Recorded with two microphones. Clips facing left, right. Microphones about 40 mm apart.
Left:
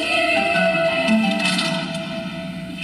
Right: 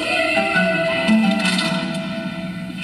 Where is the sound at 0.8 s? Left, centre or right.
Centre.